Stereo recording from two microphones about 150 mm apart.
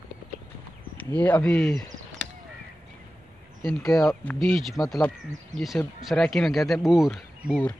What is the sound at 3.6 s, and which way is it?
A man's voice, centre (ahead or behind).